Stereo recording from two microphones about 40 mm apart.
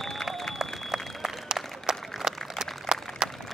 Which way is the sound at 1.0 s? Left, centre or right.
Centre.